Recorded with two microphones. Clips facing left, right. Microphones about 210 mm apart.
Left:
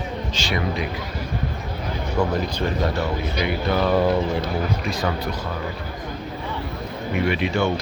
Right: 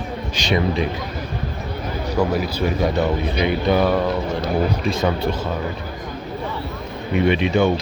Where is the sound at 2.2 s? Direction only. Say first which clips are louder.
Right 2 dB; 10° right (ahead or behind); by 5.1 s 25° right (ahead or behind).